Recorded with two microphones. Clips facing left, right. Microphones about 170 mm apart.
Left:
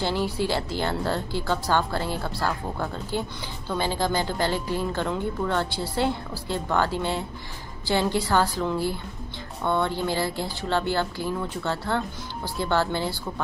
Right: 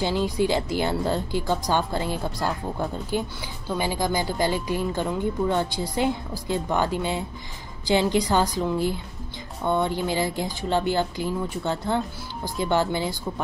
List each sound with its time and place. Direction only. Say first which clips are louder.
0.0 s speech: right 2 dB; 15° right (ahead or behind)